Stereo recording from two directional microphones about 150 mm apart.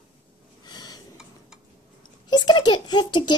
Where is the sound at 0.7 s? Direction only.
25° left (ahead or behind).